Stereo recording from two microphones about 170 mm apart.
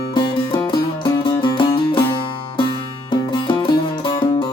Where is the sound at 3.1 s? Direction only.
30° left (ahead or behind).